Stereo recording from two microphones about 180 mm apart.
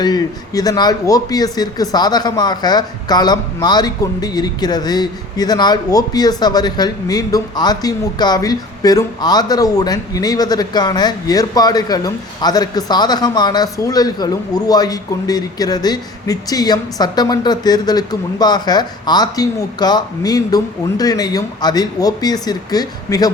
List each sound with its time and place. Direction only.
0.0 s speech: 20° left (ahead or behind)